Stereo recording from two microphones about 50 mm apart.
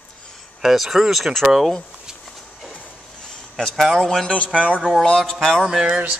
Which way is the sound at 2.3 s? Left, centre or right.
Centre.